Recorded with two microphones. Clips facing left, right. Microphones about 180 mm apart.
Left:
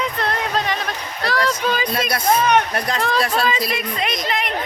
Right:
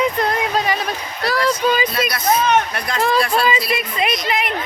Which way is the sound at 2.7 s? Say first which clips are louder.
Right 2 dB; 40° left (ahead or behind).